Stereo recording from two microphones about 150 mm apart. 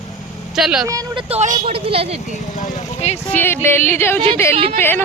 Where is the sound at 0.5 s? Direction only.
5° right (ahead or behind).